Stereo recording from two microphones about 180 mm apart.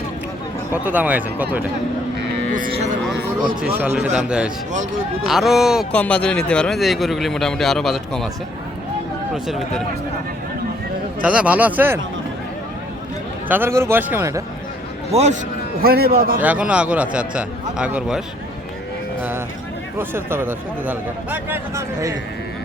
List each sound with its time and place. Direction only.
0.7 s speech: 10° right (ahead or behind)
2.5 s a sound: 50° right (ahead or behind)
3.6 s a man's voice: 10° right (ahead or behind)
5.9 s a man's voice: 5° left (ahead or behind)
9.3 s a man's voice: centre (ahead or behind)
11.2 s speech: 5° right (ahead or behind)
13.5 s speech: 15° right (ahead or behind)
15.1 s a man's voice: 40° right (ahead or behind)
15.8 s a man's voice: 60° right (ahead or behind)
16.4 s speech: 5° right (ahead or behind)
20.0 s speech: 10° right (ahead or behind)